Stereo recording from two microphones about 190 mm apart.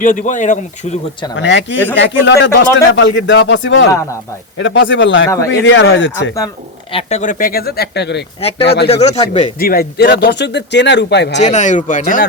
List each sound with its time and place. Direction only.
0.0 s speech: 45° left (ahead or behind)
1.4 s speech: 70° left (ahead or behind)
5.3 s a man's voice: 15° left (ahead or behind)
5.6 s speech: 80° left
6.9 s speech: 40° left (ahead or behind); by 8.2 s 60° left (ahead or behind)
8.4 s speech: 30° left (ahead or behind)
8.6 s speech: 60° left (ahead or behind)
8.9 s speech: 35° left (ahead or behind)
9.6 s speech: 50° left (ahead or behind)
11.3 s speech: 40° left (ahead or behind)